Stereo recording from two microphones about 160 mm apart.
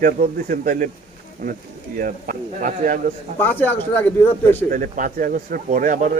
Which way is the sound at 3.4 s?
10° left (ahead or behind).